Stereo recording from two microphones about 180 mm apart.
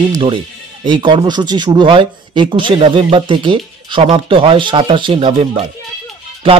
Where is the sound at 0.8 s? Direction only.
25° right (ahead or behind).